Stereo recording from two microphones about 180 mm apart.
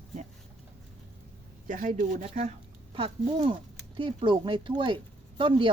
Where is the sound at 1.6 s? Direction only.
45° right (ahead or behind).